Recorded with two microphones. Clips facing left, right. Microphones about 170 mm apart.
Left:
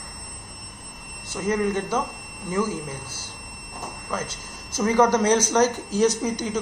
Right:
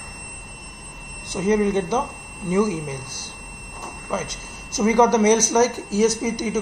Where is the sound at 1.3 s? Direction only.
20° right (ahead or behind).